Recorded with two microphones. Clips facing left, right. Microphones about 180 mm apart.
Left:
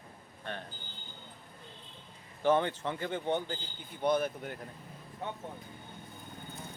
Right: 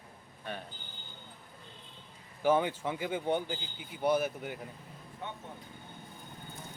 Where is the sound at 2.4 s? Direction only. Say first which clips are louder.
Even; 10° right (ahead or behind).